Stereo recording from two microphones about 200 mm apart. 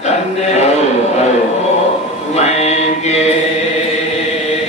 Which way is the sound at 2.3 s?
35° left (ahead or behind).